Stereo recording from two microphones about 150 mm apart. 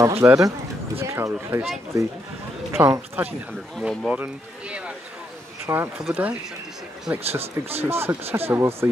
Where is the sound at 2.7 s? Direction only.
15° right (ahead or behind).